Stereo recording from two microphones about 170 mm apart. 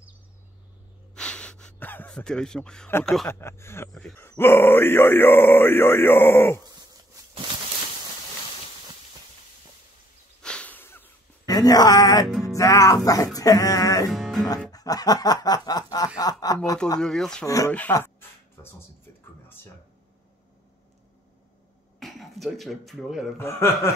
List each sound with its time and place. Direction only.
1.1 s a sound: 5° left (ahead or behind)
3.3 s speech: 15° left (ahead or behind)
10.4 s a sound: 5° left (ahead or behind); by 12.3 s 20° left (ahead or behind)
12.3 s music: centre (ahead or behind)
12.5 s music: 20° left (ahead or behind)
14.1 s speech: centre (ahead or behind)
14.7 s music: 20° left (ahead or behind)
17.0 s speech: 5° left (ahead or behind)
22.0 s speech: centre (ahead or behind)
23.4 s speech: 15° left (ahead or behind)